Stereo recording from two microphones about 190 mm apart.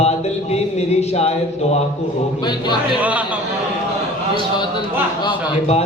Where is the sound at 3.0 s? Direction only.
5° right (ahead or behind).